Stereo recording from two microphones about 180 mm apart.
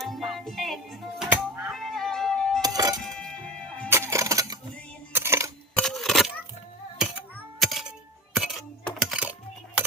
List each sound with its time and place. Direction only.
0.0 s music: centre (ahead or behind)
2.6 s music: 20° right (ahead or behind)
3.0 s music: 5° left (ahead or behind)
3.8 s a sound: 15° right (ahead or behind)
5.1 s coin: 15° right (ahead or behind)
5.7 s a sound: centre (ahead or behind)
7.6 s music: centre (ahead or behind)
8.4 s coin: centre (ahead or behind)